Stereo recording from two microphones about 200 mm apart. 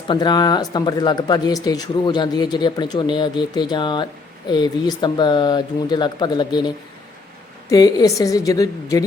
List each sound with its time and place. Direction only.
0.1 s speech: 20° left (ahead or behind)
7.7 s a woman's voice: 20° left (ahead or behind)